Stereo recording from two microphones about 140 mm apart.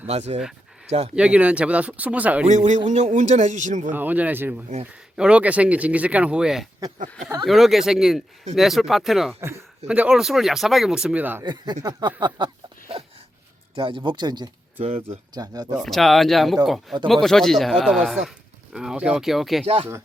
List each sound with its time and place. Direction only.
0.1 s speech: 50° right (ahead or behind)
1.1 s speech: 10° right (ahead or behind)
2.5 s a man's voice: 60° right (ahead or behind)
3.9 s speech: 10° right (ahead or behind)
11.4 s speech: 30° right (ahead or behind)
13.7 s speech: 40° right (ahead or behind)
14.8 s speech: 45° right (ahead or behind)
15.4 s speech: 30° right (ahead or behind)
15.7 s speech: centre (ahead or behind)
19.6 s speech: 45° right (ahead or behind)